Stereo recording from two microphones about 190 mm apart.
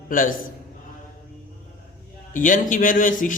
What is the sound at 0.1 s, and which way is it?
Speech, 45° left (ahead or behind).